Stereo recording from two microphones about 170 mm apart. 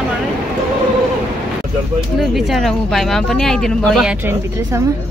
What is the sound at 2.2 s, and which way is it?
Speech, centre (ahead or behind).